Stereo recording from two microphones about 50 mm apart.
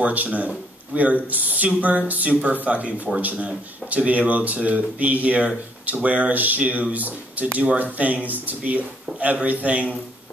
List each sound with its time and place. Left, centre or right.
0.0 s speech: right